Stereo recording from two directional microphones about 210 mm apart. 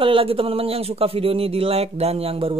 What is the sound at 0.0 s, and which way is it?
Speech, 25° right (ahead or behind).